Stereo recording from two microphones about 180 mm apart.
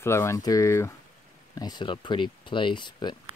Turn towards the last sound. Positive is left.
turn(degrees=25)  # may be behind; listen again after turning